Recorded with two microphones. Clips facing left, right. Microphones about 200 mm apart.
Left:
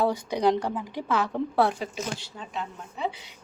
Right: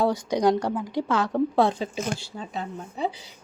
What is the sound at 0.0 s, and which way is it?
A woman's voice, 10° left (ahead or behind).